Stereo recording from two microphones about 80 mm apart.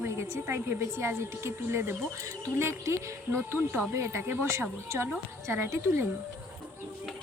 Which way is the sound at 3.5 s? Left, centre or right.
Right.